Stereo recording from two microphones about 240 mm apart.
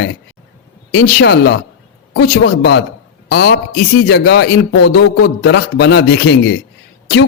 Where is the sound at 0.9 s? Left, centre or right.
Left.